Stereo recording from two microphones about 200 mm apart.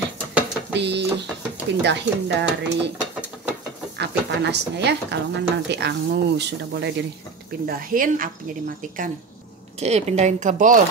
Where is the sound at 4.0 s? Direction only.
60° right (ahead or behind).